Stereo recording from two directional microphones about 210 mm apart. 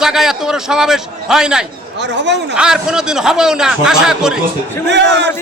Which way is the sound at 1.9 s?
55° right (ahead or behind).